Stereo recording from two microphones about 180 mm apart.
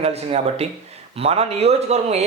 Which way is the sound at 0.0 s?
35° right (ahead or behind).